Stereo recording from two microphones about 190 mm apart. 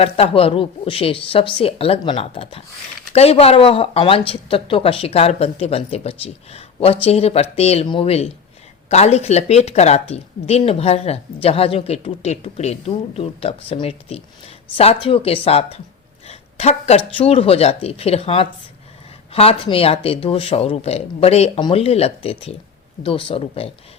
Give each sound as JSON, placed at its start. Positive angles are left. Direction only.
{"t": 0.0, "sound": "a woman's voice", "side_deg": 30}
{"t": 16.2, "sound": "a sound", "side_deg": 35}
{"t": 17.2, "sound": "a woman's voice", "side_deg": 30}